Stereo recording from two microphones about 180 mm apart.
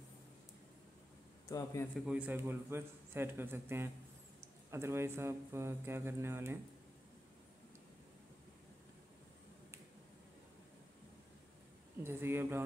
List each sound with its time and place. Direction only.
1.5 s a man's voice: 15° left (ahead or behind)
2.0 s a man's voice: 5° right (ahead or behind)
12.0 s a man's voice: 15° right (ahead or behind)